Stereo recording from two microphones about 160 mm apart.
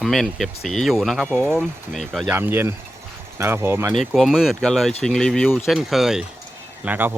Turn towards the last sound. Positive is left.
turn(degrees=-10)  # may be behind; listen again after turning